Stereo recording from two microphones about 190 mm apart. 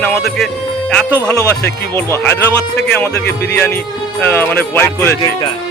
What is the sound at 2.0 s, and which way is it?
Speech, 10° left (ahead or behind).